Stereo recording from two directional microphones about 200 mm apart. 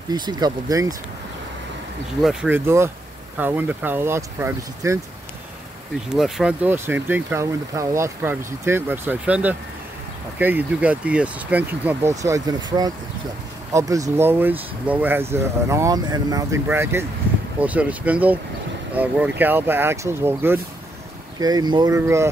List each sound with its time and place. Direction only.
0.1 s speech: 20° right (ahead or behind)
2.2 s speech: 5° right (ahead or behind)
6.0 s speech: centre (ahead or behind); by 12.5 s 15° right (ahead or behind)
13.7 s speech: 15° right (ahead or behind)